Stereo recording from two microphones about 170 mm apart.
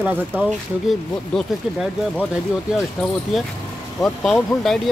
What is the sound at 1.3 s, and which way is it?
Speech, 5° left (ahead or behind).